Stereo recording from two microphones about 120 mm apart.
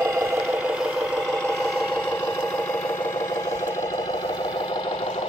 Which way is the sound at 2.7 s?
20° left (ahead or behind).